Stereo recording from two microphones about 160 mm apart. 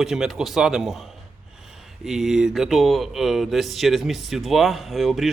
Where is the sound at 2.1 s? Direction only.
Centre (ahead or behind).